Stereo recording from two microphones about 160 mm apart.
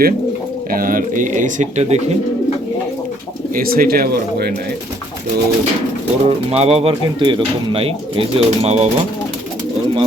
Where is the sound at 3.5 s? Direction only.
65° right (ahead or behind).